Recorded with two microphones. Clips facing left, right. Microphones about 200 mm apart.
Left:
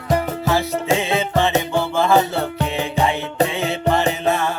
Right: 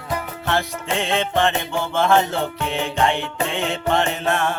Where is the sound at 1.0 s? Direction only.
5° left (ahead or behind).